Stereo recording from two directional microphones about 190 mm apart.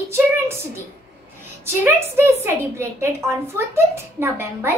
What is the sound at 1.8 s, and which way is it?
A child's voice, 15° right (ahead or behind).